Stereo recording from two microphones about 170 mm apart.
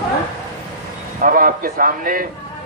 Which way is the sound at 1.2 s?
55° right (ahead or behind).